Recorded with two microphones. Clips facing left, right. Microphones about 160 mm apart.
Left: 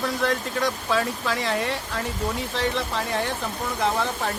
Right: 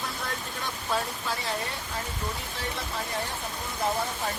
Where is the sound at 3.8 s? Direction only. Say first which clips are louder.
Left 4 dB; 80° left.